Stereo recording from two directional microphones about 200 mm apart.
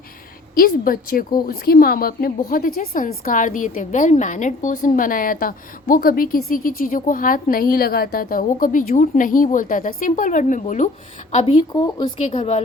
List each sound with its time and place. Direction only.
0.5 s a woman's voice: 45° left (ahead or behind)